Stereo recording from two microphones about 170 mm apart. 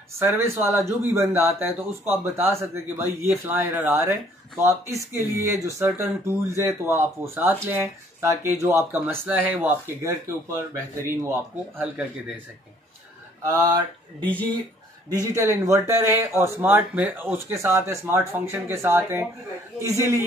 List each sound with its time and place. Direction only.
0.2 s speech: 15° right (ahead or behind)
13.4 s speech: 20° right (ahead or behind)
15.1 s speech: 20° right (ahead or behind)